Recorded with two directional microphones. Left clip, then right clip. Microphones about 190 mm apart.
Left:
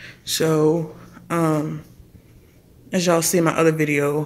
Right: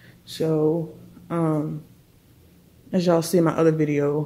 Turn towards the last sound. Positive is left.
turn(degrees=-15)  # may be behind; listen again after turning